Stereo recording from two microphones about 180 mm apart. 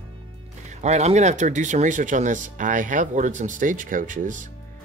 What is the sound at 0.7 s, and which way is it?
Speech, 40° right (ahead or behind).